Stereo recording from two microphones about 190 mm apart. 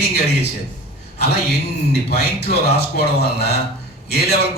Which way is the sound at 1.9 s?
60° left (ahead or behind).